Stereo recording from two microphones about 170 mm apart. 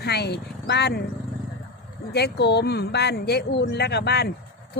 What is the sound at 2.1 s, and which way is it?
A woman's voice, 75° left (ahead or behind).